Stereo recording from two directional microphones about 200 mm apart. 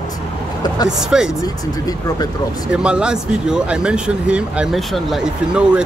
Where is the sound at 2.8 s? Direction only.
5° right (ahead or behind).